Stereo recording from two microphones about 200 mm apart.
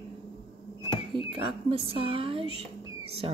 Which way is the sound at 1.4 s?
30° right (ahead or behind).